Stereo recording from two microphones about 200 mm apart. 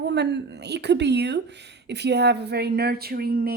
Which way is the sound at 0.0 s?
60° right (ahead or behind).